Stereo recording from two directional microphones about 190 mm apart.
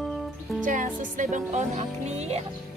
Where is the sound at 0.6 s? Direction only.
45° right (ahead or behind).